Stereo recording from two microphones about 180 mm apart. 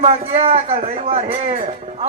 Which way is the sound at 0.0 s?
35° right (ahead or behind).